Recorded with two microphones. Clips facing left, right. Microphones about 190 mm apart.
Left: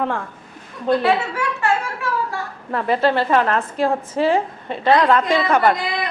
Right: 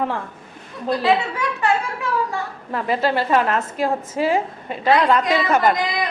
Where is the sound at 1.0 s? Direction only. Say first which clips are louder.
Even; 15° right (ahead or behind).